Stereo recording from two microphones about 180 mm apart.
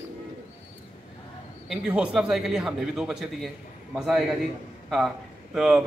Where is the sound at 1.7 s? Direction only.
5° right (ahead or behind).